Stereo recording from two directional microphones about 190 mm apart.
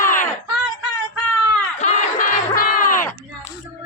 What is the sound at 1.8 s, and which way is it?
Crowd, 40° left (ahead or behind).